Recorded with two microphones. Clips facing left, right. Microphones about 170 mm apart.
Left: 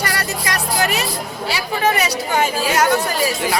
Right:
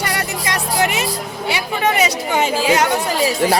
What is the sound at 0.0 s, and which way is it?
Music, 20° right (ahead or behind).